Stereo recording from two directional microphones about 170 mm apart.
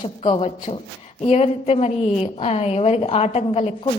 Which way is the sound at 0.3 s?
40° left (ahead or behind).